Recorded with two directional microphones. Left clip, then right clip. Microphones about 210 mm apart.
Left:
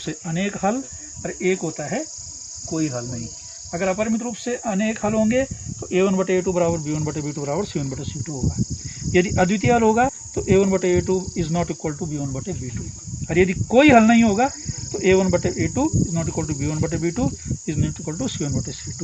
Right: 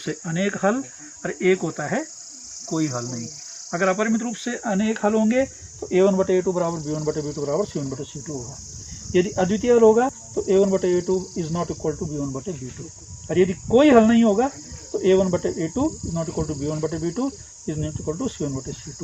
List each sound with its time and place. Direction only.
0.0 s speech: 25° left (ahead or behind)
2.6 s cricket: 5° left (ahead or behind)
3.8 s speech: 15° left (ahead or behind)
5.9 s cricket: 30° left (ahead or behind)
7.0 s cricket: 60° left (ahead or behind)
9.1 s speech: 55° left (ahead or behind)
13.2 s speech: 50° left (ahead or behind)